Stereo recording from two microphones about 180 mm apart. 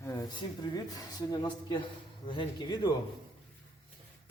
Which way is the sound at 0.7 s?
20° left (ahead or behind).